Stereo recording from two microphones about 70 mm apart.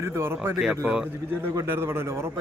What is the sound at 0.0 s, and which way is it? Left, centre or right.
Speech, right.